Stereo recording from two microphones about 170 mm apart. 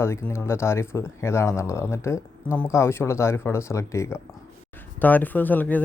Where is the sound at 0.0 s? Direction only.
15° left (ahead or behind).